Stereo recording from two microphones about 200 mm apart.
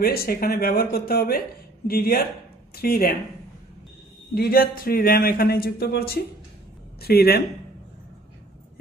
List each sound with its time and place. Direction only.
0.0 s speech: 50° left (ahead or behind)
4.4 s speech: 50° left (ahead or behind)